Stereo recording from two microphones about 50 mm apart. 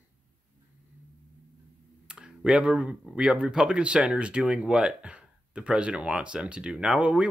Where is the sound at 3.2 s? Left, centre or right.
Centre.